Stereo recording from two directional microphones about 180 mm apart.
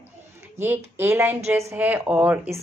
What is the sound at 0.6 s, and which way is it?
Speech, 10° right (ahead or behind).